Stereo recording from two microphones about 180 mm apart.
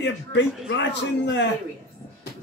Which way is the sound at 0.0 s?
80° left.